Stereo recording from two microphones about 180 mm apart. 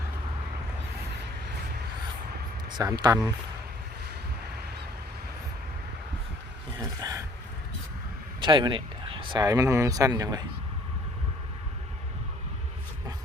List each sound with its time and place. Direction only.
2.7 s speech: 25° right (ahead or behind)
6.7 s dog: 20° right (ahead or behind)
8.4 s speech: 25° right (ahead or behind)